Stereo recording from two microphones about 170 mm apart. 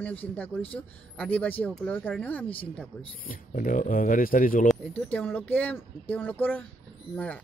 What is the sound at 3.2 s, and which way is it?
Speech, 55° left (ahead or behind).